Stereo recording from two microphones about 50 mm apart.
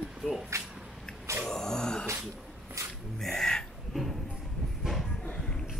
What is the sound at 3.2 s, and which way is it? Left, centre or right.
Gasp, centre.